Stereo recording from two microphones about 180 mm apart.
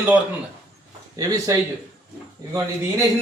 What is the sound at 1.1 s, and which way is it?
Speech, 20° right (ahead or behind).